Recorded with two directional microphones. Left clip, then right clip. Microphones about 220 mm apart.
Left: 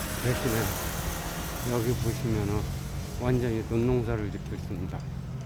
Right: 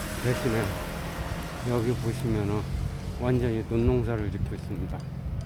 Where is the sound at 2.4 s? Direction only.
10° right (ahead or behind).